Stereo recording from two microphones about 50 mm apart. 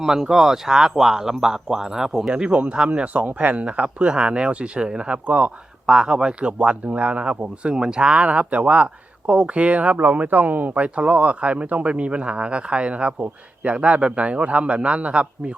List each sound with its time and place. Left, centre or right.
0.0 s speech: centre
2.3 s speech: right